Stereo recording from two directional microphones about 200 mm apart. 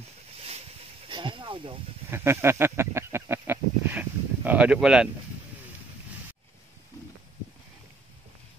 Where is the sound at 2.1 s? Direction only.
10° right (ahead or behind).